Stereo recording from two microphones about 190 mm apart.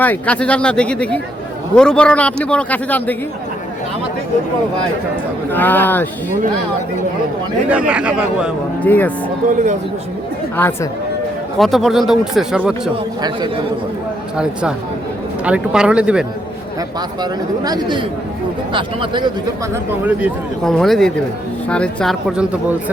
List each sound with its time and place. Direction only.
0.0 s a man's voice: 10° left (ahead or behind)
5.5 s a man's voice: 10° left (ahead or behind)
7.7 s speech: 5° right (ahead or behind)
8.8 s a man's voice: 10° left (ahead or behind)
10.6 s a man's voice: 10° left (ahead or behind)
15.4 s speech: 5° right (ahead or behind)
17.6 s speech: 20° right (ahead or behind)
20.7 s speech: centre (ahead or behind)